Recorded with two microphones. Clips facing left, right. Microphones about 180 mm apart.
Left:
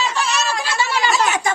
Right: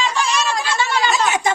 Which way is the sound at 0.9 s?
10° left (ahead or behind).